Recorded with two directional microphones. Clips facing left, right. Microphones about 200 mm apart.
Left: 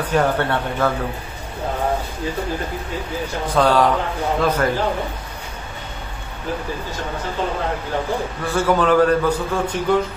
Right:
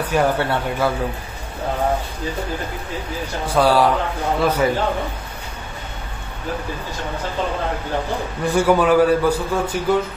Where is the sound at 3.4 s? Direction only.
10° right (ahead or behind).